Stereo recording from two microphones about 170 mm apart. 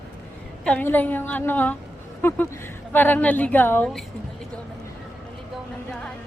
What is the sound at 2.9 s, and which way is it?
A woman's voice, 10° left (ahead or behind).